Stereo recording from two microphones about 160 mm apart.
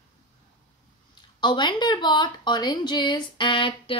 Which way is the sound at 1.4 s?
30° left (ahead or behind).